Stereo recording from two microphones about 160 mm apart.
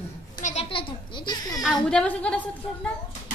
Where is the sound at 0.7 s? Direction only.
35° left (ahead or behind).